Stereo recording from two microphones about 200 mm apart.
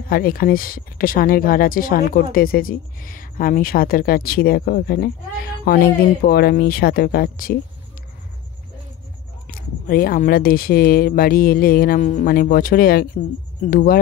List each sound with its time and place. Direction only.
0.1 s speech: 45° left (ahead or behind)
9.5 s speech: 45° left (ahead or behind)